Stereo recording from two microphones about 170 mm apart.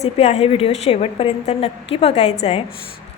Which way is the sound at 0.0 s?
40° left (ahead or behind).